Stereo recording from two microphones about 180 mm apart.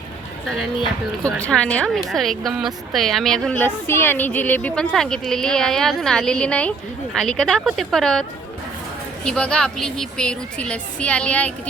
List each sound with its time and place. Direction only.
0.4 s a woman's voice: centre (ahead or behind)
9.2 s a woman's voice: 5° left (ahead or behind)